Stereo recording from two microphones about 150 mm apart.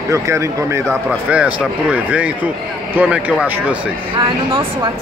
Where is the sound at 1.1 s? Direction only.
10° right (ahead or behind).